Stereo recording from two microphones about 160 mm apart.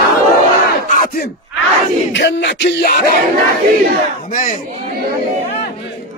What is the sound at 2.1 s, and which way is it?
Speech, 90° left.